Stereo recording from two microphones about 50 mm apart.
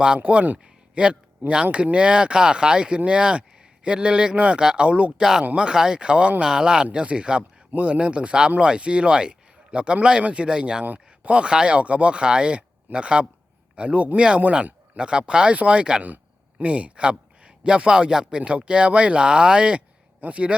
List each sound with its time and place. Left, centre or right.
0.2 s speech: right
5.2 s speech: centre
10.8 s speech: right
16.0 s speech: right